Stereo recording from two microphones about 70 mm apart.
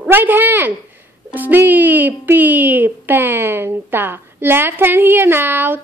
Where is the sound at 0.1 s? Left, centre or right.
Right.